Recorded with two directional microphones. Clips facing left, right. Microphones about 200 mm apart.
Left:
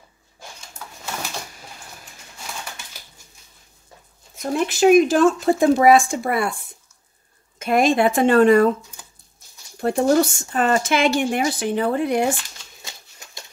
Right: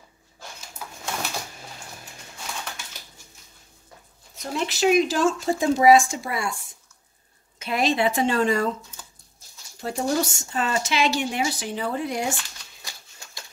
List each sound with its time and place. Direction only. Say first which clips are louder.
0.8 s bird: right 1 dB; 10° right (ahead or behind)
4.4 s a woman's voice: left 6 dB; 50° left (ahead or behind)
9.8 s speech: left 8 dB; 60° left (ahead or behind)